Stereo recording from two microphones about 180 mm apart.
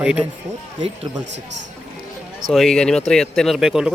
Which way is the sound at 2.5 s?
Centre (ahead or behind).